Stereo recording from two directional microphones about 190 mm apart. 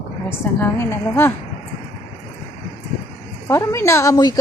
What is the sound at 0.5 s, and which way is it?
Speech, 10° left (ahead or behind).